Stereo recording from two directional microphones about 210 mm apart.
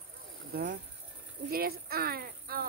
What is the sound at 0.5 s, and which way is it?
Speech, 45° right (ahead or behind).